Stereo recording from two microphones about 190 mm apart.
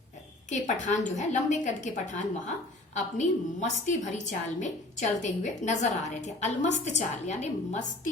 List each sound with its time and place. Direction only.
0.5 s a woman's voice: 40° left (ahead or behind)